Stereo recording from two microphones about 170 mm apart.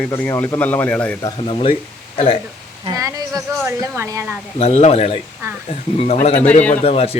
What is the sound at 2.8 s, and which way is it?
Speech, 20° right (ahead or behind).